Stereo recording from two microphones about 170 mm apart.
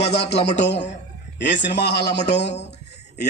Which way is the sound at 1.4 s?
90° left.